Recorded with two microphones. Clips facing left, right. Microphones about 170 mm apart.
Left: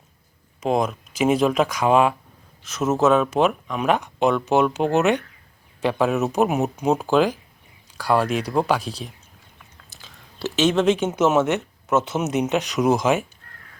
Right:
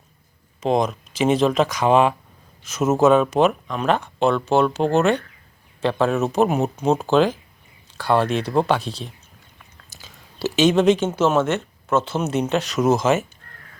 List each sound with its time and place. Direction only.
0.6 s speech: 5° left (ahead or behind)
9.9 s speech: centre (ahead or behind)
11.1 s speech: 20° left (ahead or behind)